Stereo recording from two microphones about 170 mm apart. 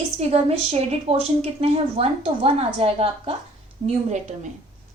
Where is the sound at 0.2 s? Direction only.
40° right (ahead or behind).